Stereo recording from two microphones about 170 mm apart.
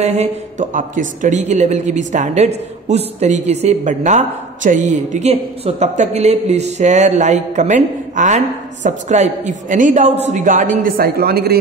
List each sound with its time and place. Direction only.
0.0 s speech: 40° right (ahead or behind); by 11.6 s 65° right (ahead or behind)